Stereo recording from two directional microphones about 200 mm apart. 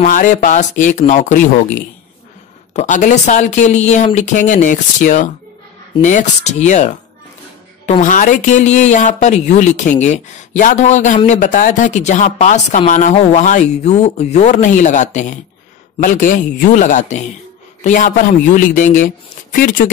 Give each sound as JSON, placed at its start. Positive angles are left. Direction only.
{"t": 0.0, "sound": "speech", "side_deg": 40}